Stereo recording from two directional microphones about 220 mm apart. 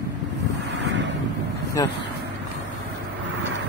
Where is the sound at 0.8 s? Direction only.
55° right (ahead or behind).